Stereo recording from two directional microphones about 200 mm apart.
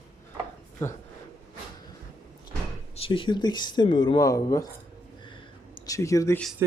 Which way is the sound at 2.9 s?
25° left (ahead or behind).